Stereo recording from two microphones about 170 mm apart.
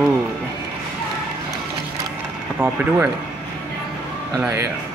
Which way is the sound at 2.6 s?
10° right (ahead or behind).